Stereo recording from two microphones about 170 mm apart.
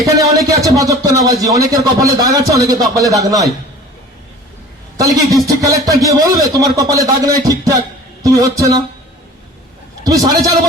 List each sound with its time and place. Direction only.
0.0 s speech: 20° right (ahead or behind)
4.9 s speech: 20° right (ahead or behind)
10.0 s speech: 20° right (ahead or behind)